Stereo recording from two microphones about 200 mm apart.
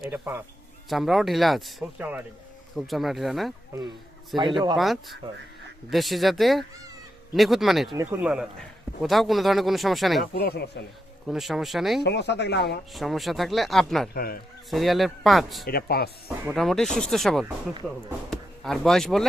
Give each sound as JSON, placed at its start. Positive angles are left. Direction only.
{"t": 0.0, "sound": "a man's voice", "side_deg": -10}
{"t": 4.4, "sound": "speech", "side_deg": -25}
{"t": 5.9, "sound": "a man's voice", "side_deg": 0}
{"t": 10.3, "sound": "a man's voice", "side_deg": 50}
{"t": 11.3, "sound": "a man's voice", "side_deg": 0}
{"t": 12.0, "sound": "speech", "side_deg": 60}
{"t": 12.9, "sound": "a man's voice", "side_deg": 0}
{"t": 14.1, "sound": "a man's voice", "side_deg": 50}
{"t": 14.7, "sound": "a man's voice", "side_deg": 0}
{"t": 15.6, "sound": "a man's voice", "side_deg": 50}
{"t": 16.6, "sound": "a man's voice", "side_deg": 0}